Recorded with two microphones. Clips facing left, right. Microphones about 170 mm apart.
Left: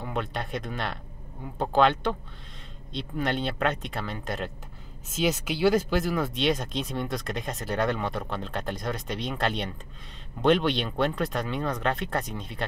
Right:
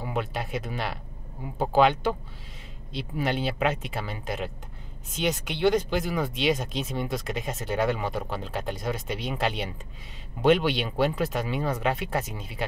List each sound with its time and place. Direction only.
0.0 s speech: 5° right (ahead or behind)